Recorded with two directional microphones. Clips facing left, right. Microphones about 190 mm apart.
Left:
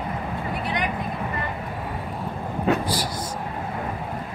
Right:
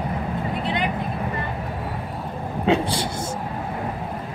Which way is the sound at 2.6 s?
25° right (ahead or behind).